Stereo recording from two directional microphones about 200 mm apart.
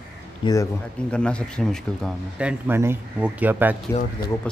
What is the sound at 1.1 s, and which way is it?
Speech, 5° left (ahead or behind).